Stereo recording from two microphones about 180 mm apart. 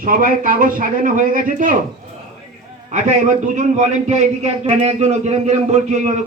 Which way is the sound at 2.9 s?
40° right (ahead or behind).